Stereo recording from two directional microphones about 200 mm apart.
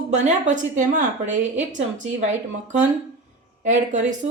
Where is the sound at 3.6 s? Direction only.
40° right (ahead or behind).